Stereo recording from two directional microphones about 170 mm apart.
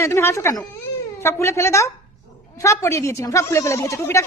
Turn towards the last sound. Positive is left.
turn(degrees=15)  # may be behind; listen again after turning